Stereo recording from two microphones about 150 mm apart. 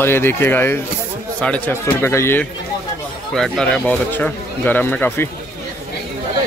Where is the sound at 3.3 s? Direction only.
5° left (ahead or behind).